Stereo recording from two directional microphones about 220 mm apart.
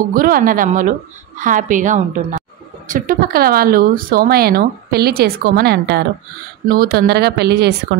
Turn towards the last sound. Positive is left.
turn(degrees=-50)  # may be behind; listen again after turning